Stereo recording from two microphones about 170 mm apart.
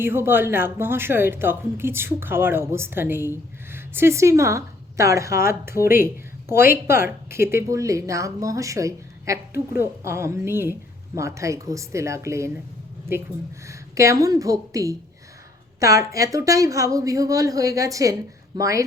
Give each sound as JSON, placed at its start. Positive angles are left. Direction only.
{"t": 0.0, "sound": "a woman's voice", "side_deg": -15}
{"t": 13.7, "sound": "a woman's voice", "side_deg": -20}